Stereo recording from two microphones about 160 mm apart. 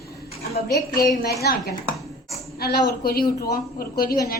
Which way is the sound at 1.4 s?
80° left.